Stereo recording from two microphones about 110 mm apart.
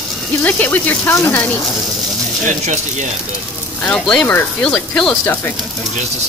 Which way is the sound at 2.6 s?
90° right.